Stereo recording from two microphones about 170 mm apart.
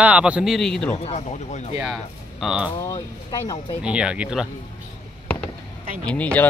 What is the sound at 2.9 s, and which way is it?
Speech, 25° left (ahead or behind).